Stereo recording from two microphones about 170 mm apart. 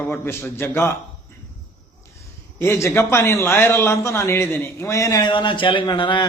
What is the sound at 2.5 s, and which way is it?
A man's voice, 15° left (ahead or behind).